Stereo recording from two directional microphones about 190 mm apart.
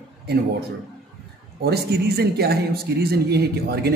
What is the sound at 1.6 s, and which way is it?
A man's voice, 55° right (ahead or behind).